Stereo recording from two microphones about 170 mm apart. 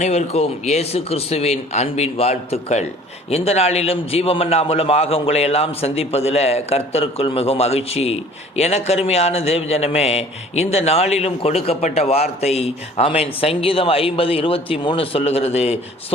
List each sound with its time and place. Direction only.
0.0 s a man's voice: 40° left (ahead or behind)